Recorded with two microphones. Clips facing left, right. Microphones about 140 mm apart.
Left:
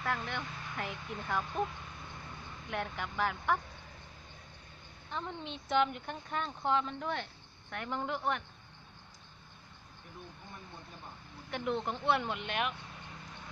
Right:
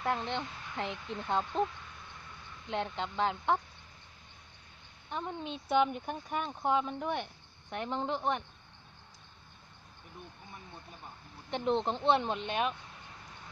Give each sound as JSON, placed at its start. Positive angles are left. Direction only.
{"t": 0.0, "sound": "speech", "side_deg": -25}
{"t": 2.7, "sound": "speech", "side_deg": -20}
{"t": 5.1, "sound": "speech", "side_deg": -15}
{"t": 11.5, "sound": "speech", "side_deg": -25}